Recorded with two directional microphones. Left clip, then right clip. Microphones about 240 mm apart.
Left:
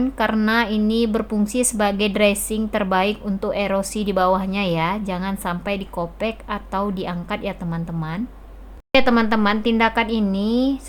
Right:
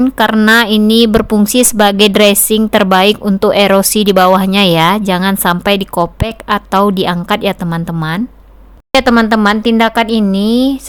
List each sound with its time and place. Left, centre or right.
0.0 s speech: right